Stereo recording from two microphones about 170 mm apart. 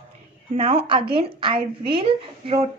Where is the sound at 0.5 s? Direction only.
35° right (ahead or behind).